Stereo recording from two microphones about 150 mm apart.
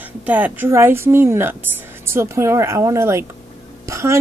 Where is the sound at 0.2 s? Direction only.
10° right (ahead or behind).